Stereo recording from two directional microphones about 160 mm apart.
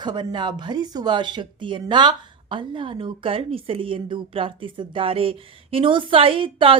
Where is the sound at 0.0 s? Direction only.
25° right (ahead or behind).